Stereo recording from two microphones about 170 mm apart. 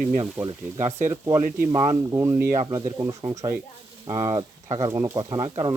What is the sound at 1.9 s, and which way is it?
Speech, 20° right (ahead or behind).